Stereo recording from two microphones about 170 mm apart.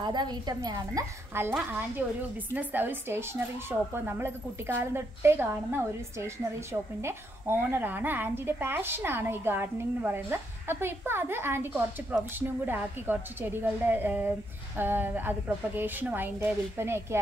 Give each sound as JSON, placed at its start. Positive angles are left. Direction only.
{"t": 0.0, "sound": "a woman's voice", "side_deg": -25}